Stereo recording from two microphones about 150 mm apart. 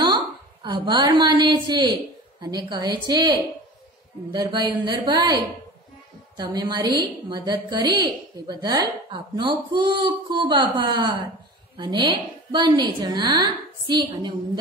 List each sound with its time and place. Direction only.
0.0 s a woman's voice: 30° right (ahead or behind)